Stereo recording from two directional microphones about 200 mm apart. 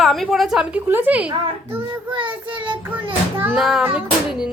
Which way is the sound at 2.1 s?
25° right (ahead or behind).